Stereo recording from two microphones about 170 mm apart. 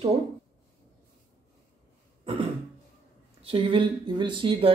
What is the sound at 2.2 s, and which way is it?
Cough, 30° right (ahead or behind).